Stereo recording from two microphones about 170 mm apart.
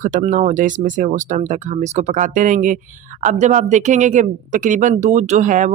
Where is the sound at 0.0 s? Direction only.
50° right (ahead or behind).